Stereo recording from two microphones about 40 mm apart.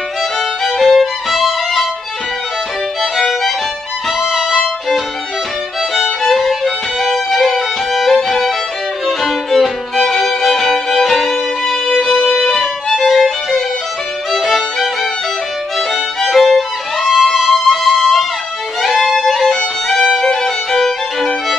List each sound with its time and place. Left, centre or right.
0.7 s music: centre
3.0 s music: centre
4.2 s music: centre
5.9 s violin: centre
12.3 s music: centre
15.9 s music: centre
17.0 s music: centre
18.8 s violin: centre